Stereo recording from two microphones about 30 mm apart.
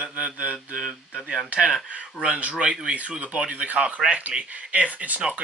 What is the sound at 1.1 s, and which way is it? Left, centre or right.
Speech, right.